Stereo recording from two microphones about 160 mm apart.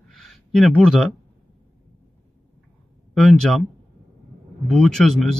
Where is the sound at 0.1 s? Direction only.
Centre (ahead or behind).